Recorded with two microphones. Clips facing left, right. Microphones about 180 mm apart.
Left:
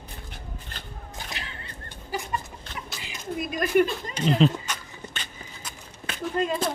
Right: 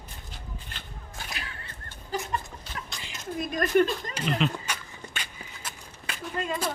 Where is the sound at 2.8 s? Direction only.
5° left (ahead or behind).